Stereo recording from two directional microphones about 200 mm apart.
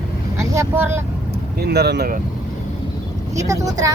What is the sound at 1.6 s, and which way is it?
Speech, 55° right (ahead or behind).